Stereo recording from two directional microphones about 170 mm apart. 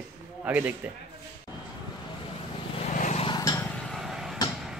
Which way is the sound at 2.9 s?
45° left (ahead or behind).